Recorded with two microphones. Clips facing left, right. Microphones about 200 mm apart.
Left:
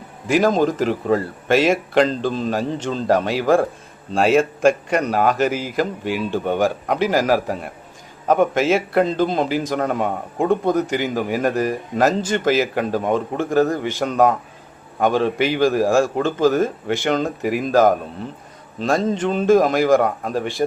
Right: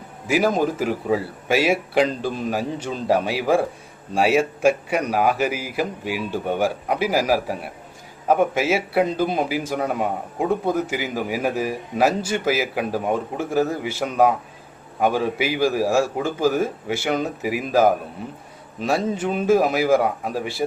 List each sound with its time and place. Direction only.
0.3 s a man's voice: 10° right (ahead or behind)